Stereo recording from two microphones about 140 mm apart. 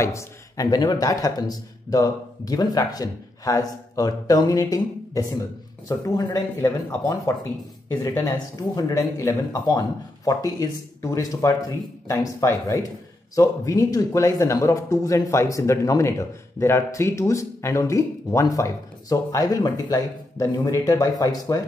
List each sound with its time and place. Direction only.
0.0 s speech: 25° left (ahead or behind)
8.7 s speech: 25° left (ahead or behind)